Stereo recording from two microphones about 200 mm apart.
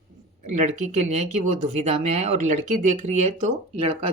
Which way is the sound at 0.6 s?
35° right (ahead or behind).